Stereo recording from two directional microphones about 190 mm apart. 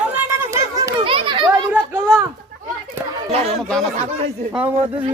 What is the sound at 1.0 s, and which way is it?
Children playing, 25° right (ahead or behind).